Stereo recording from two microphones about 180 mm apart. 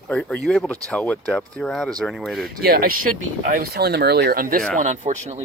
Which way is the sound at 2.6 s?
55° right (ahead or behind).